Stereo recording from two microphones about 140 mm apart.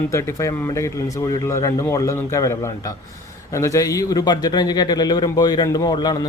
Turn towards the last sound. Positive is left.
turn(degrees=30)  # may be behind; listen again after turning